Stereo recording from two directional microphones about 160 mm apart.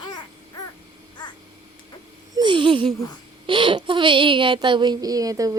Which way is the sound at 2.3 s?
30° right (ahead or behind).